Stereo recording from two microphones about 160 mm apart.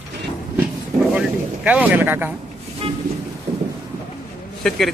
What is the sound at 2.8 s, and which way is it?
Vehicle, 35° right (ahead or behind).